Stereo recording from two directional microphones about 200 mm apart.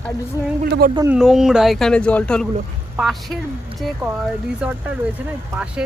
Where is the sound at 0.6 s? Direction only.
50° right (ahead or behind).